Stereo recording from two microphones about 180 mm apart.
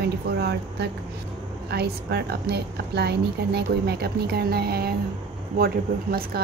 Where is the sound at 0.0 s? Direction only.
65° right (ahead or behind).